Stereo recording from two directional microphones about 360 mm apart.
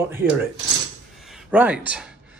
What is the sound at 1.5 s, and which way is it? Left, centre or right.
Speech, centre.